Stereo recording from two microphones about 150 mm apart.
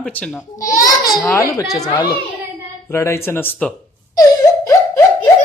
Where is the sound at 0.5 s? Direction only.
20° left (ahead or behind).